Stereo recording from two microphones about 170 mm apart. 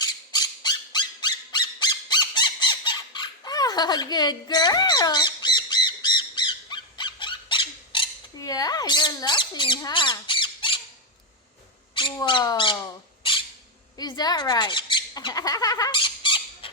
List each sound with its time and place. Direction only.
0.0 s squawk: 25° left (ahead or behind)
12.2 s speech: 25° left (ahead or behind)
13.9 s a sound: 25° left (ahead or behind)